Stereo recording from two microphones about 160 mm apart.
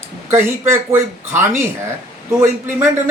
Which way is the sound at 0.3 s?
15° right (ahead or behind).